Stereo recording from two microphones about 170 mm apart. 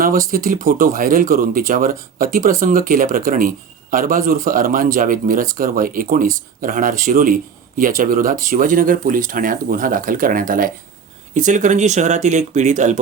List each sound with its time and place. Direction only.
0.3 s speech: 55° right (ahead or behind)